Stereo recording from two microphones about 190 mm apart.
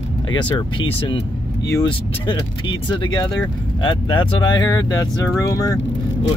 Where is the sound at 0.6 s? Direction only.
25° left (ahead or behind).